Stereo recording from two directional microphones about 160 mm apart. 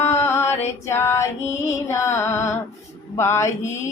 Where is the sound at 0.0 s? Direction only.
15° left (ahead or behind).